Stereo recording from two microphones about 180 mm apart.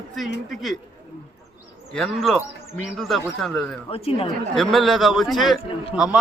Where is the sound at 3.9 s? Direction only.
30° left (ahead or behind).